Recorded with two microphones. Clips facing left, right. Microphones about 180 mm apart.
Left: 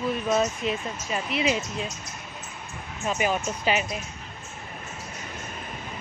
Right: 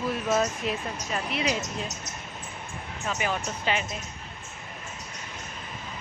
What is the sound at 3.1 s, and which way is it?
Speech, 15° left (ahead or behind).